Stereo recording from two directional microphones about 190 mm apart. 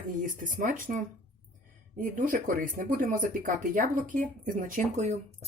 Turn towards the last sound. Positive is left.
turn(degrees=-35)  # may be behind; listen again after turning